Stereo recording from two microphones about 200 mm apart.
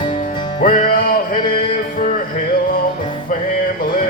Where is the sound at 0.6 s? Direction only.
45° left (ahead or behind).